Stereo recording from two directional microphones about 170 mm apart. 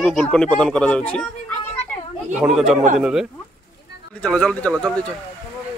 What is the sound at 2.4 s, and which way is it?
A child's voice, centre (ahead or behind).